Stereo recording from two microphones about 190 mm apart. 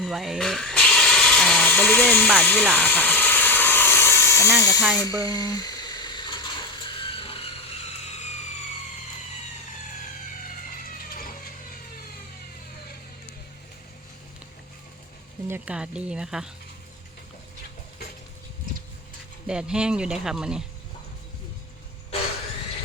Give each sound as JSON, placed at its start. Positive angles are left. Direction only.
{"t": 0.0, "sound": "electric toothbrush", "side_deg": 0}
{"t": 4.9, "sound": "a sound", "side_deg": 20}
{"t": 11.1, "sound": "mechanisms", "side_deg": 45}
{"t": 15.4, "sound": "speech", "side_deg": -10}
{"t": 19.5, "sound": "speech", "side_deg": -5}